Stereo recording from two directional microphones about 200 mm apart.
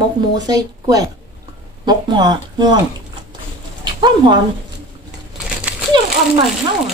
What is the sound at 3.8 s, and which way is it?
Speech, 20° right (ahead or behind).